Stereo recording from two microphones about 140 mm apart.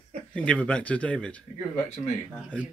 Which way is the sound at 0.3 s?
10° left (ahead or behind).